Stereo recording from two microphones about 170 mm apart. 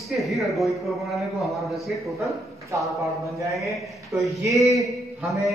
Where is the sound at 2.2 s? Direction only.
20° right (ahead or behind).